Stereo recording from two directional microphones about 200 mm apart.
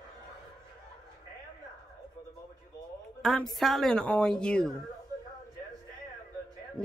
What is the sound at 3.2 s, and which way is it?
Speech, centre (ahead or behind).